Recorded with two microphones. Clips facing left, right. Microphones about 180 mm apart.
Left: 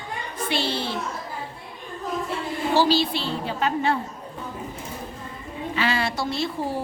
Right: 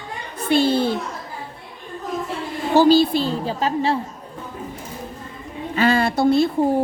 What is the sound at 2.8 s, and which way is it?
A woman's voice, 45° right (ahead or behind).